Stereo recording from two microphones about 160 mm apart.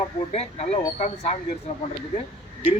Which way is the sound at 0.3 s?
45° left (ahead or behind).